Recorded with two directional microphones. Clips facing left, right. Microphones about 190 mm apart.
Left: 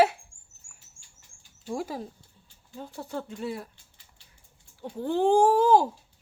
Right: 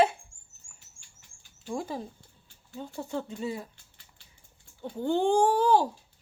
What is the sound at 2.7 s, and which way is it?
Speech, centre (ahead or behind).